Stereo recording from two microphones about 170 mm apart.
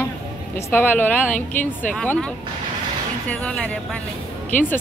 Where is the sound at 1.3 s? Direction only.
50° left (ahead or behind).